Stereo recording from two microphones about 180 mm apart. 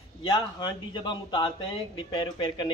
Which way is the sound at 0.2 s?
25° left (ahead or behind).